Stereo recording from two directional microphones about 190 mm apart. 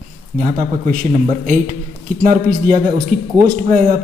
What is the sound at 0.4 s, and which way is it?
A man's voice, 40° right (ahead or behind).